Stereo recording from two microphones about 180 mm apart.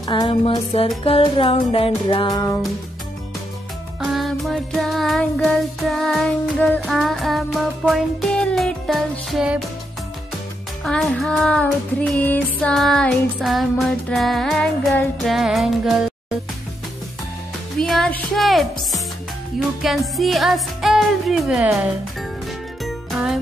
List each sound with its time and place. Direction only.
0.0 s music: 25° left (ahead or behind)
4.0 s music: centre (ahead or behind)
10.8 s music: 5° left (ahead or behind)
17.7 s speech: centre (ahead or behind)
19.8 s music: centre (ahead or behind)
22.8 s music: centre (ahead or behind)